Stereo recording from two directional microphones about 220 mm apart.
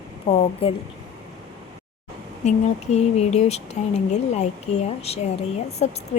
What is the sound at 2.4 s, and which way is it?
Speech, 30° left (ahead or behind).